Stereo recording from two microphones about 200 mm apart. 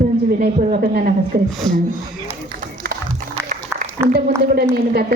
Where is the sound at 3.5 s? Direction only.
40° right (ahead or behind).